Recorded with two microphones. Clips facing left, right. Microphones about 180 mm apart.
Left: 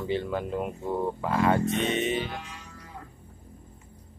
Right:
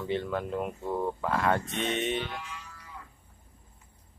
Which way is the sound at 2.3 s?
35° left (ahead or behind).